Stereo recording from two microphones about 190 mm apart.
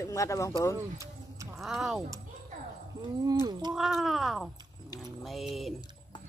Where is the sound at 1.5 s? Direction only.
Centre (ahead or behind).